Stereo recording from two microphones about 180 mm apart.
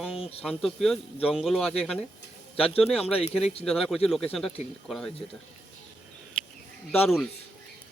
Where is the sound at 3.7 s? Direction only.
Centre (ahead or behind).